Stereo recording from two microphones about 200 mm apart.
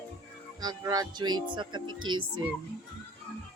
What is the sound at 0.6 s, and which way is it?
Speech, 20° right (ahead or behind).